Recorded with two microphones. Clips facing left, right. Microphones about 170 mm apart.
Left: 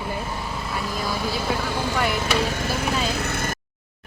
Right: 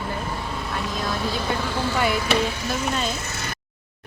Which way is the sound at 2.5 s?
50° left (ahead or behind).